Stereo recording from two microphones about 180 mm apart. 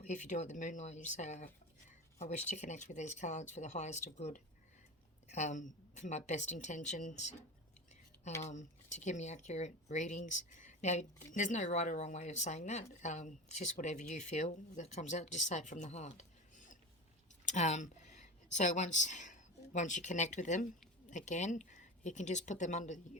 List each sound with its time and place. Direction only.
0.0 s speech: 40° left (ahead or behind)
8.4 s speech: 40° left (ahead or behind)